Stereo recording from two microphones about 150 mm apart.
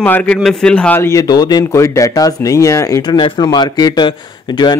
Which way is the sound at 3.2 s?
30° left (ahead or behind).